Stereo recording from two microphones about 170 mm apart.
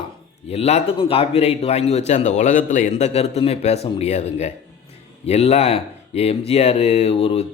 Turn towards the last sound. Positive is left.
turn(degrees=35)  # may be behind; listen again after turning